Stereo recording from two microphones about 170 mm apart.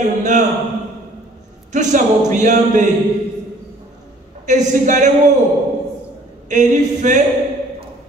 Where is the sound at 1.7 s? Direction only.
45° right (ahead or behind).